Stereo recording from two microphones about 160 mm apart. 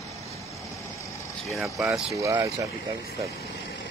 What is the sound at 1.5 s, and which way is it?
Speech, centre (ahead or behind).